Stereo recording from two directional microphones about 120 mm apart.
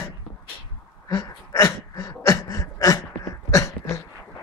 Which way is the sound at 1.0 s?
30° left (ahead or behind).